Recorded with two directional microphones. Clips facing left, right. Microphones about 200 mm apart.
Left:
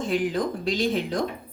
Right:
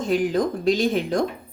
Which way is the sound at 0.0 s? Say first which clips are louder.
Right 4 dB; 45° right (ahead or behind).